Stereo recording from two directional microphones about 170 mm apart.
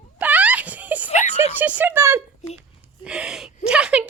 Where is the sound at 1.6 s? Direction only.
10° right (ahead or behind).